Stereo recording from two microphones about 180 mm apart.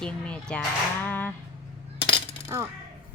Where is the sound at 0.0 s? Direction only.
5° left (ahead or behind).